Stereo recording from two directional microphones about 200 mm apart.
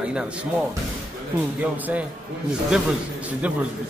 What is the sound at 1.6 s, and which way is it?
Speech, 5° right (ahead or behind).